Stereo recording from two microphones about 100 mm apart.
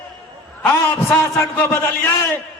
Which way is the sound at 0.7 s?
25° left (ahead or behind).